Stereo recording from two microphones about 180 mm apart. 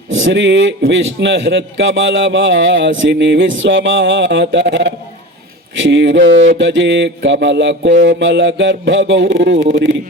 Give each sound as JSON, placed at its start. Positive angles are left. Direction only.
{"t": 0.1, "sound": "a man's voice", "side_deg": -90}
{"t": 6.6, "sound": "mantra", "side_deg": -90}
{"t": 8.0, "sound": "a man's voice", "side_deg": -90}